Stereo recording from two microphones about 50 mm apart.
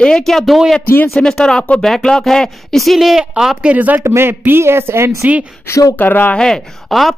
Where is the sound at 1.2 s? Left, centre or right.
Left.